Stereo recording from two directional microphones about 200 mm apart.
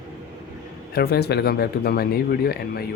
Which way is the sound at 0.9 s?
55° left (ahead or behind).